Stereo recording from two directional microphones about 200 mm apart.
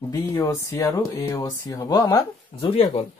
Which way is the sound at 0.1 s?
15° left (ahead or behind).